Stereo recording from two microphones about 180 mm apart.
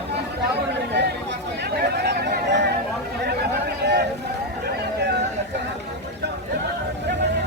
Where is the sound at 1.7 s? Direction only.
60° right (ahead or behind).